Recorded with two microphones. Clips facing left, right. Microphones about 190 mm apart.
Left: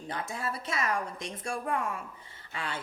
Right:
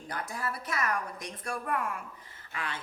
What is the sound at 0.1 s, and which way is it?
A woman's voice, 25° left (ahead or behind).